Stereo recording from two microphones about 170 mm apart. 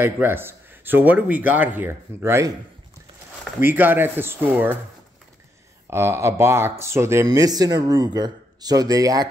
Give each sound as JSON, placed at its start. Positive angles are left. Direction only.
{"t": 0.0, "sound": "speech", "side_deg": -15}
{"t": 3.6, "sound": "speech", "side_deg": -10}
{"t": 5.9, "sound": "speech", "side_deg": -15}